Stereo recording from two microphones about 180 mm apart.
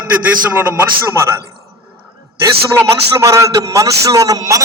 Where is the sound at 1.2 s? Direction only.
15° right (ahead or behind).